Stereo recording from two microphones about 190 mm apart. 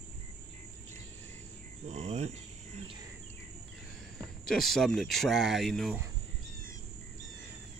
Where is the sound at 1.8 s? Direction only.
35° right (ahead or behind).